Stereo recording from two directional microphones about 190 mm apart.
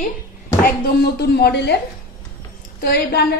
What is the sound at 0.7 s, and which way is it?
A woman's voice, 55° left (ahead or behind).